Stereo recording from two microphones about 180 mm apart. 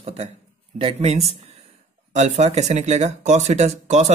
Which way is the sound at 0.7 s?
35° right (ahead or behind).